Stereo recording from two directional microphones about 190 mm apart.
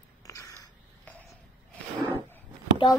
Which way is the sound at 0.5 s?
5° left (ahead or behind).